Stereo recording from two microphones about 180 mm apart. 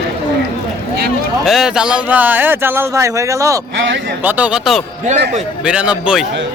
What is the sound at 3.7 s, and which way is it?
Speech, 85° right.